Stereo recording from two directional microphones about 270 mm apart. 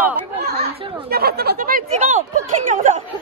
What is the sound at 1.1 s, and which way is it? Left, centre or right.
A woman's voice, right.